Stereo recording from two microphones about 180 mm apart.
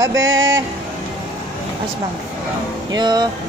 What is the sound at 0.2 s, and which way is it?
Speech, 90° right.